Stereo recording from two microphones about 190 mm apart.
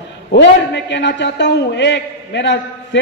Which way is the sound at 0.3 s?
65° left (ahead or behind).